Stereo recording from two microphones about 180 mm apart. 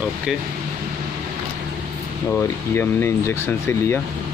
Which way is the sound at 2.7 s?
15° left (ahead or behind).